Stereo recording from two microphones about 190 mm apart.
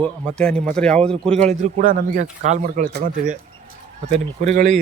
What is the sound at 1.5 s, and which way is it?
Speech, 40° right (ahead or behind).